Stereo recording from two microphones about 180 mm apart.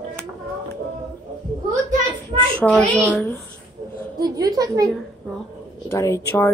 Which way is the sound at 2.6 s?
5° left (ahead or behind).